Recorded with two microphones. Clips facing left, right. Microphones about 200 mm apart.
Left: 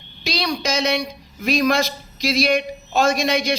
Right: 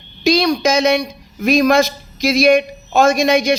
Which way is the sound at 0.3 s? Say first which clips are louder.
Right 9 dB; 45° right (ahead or behind).